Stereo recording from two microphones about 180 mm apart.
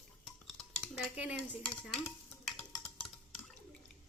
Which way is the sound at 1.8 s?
Centre (ahead or behind).